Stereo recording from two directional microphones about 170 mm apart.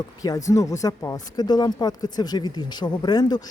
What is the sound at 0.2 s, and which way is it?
Speech, 20° left (ahead or behind).